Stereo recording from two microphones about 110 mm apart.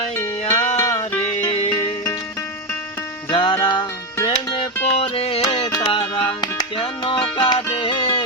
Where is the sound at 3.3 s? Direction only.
50° left (ahead or behind).